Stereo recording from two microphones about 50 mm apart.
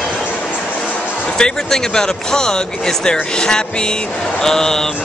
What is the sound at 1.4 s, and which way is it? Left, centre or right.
Speech, centre.